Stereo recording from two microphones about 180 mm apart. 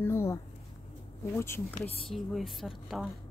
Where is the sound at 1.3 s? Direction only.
15° left (ahead or behind).